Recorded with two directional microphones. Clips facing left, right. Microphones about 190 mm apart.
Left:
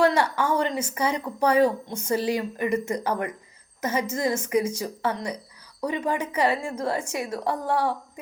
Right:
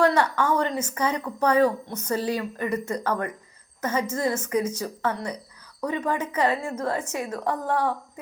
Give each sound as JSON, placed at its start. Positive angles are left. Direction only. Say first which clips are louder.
{"t": 0.0, "sound": "a woman's voice", "louder": "even", "side_deg": 10}
{"t": 2.7, "sound": "speech", "louder": "left 2 dB", "side_deg": 25}
{"t": 3.0, "sound": "a woman's voice", "louder": "even", "side_deg": 10}